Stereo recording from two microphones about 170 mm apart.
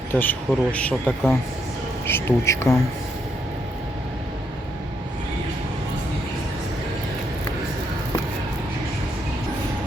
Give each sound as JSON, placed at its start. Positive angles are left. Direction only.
{"t": 0.1, "sound": "speech", "side_deg": 10}